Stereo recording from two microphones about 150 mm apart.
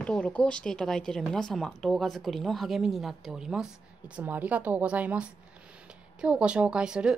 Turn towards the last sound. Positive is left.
turn(degrees=-5)  # may be behind; listen again after turning